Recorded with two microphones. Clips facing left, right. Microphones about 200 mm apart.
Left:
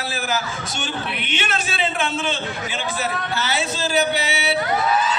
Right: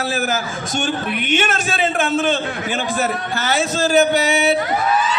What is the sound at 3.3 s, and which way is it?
A man's voice, 50° right (ahead or behind).